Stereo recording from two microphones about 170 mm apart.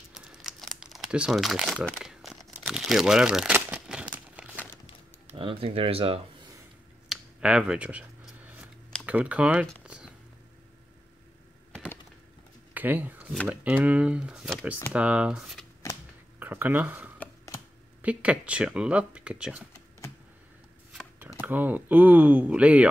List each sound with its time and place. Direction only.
0.1 s crumpling: 5° right (ahead or behind)
5.2 s speech: 30° right (ahead or behind)
7.1 s a sound: 5° right (ahead or behind)
9.0 s computer keyboard: 10° right (ahead or behind)
11.7 s a sound: 10° left (ahead or behind)
12.7 s speech: 10° right (ahead or behind)
20.9 s shuffling cards: 5° right (ahead or behind)
21.4 s speech: 10° right (ahead or behind)